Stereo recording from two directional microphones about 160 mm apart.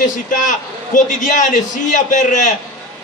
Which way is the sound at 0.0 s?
55° left (ahead or behind).